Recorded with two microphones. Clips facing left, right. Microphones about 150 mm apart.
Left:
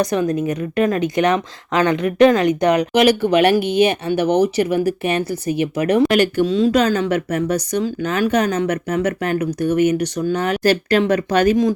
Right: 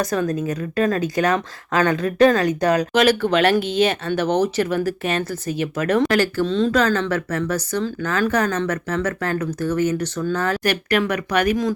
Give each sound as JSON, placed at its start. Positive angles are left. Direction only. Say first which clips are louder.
{"t": 0.0, "sound": "a woman's voice", "louder": "left 3 dB", "side_deg": 20}
{"t": 10.6, "sound": "speech", "louder": "left 5 dB", "side_deg": 30}